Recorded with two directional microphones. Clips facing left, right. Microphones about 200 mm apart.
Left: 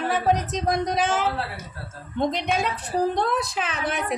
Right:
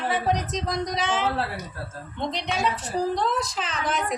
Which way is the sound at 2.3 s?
50° left (ahead or behind).